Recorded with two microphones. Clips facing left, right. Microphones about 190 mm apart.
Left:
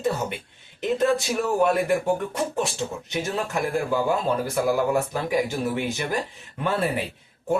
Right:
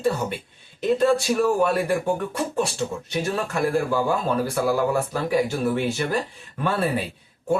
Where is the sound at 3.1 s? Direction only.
20° left (ahead or behind).